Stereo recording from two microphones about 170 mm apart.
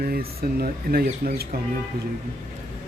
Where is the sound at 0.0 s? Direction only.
60° right (ahead or behind).